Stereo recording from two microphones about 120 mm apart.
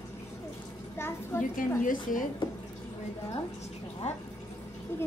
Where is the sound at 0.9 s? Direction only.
20° left (ahead or behind).